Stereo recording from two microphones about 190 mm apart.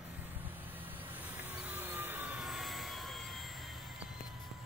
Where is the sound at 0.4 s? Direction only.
10° right (ahead or behind).